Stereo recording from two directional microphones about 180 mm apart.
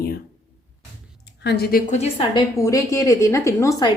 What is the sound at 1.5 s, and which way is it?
Speech, 60° left (ahead or behind).